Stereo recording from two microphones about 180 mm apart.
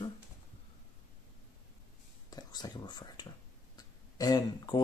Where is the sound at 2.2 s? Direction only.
20° left (ahead or behind).